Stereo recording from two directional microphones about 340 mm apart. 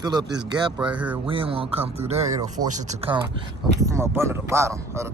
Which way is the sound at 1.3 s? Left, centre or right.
Centre.